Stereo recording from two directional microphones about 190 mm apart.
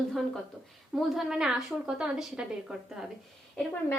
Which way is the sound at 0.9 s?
Centre (ahead or behind).